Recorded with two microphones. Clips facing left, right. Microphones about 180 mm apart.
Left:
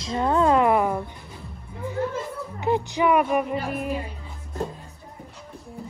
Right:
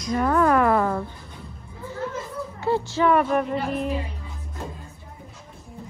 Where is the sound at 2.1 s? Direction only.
20° left (ahead or behind).